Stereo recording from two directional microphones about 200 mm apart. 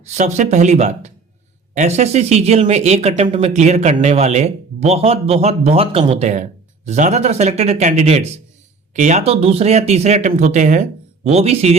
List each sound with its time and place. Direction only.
0.0 s speech: 35° right (ahead or behind)